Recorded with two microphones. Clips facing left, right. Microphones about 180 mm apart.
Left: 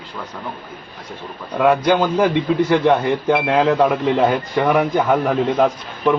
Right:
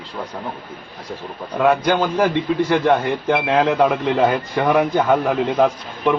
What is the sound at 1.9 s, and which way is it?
Speech, centre (ahead or behind).